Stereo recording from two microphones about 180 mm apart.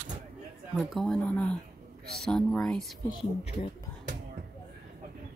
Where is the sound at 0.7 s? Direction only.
Centre (ahead or behind).